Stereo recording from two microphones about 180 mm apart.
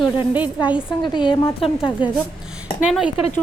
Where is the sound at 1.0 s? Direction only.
25° left (ahead or behind).